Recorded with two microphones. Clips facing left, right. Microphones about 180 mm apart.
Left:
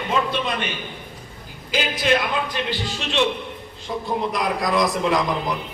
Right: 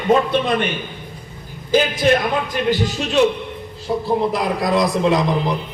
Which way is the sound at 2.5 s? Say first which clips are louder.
Right 7 dB; 45° right (ahead or behind).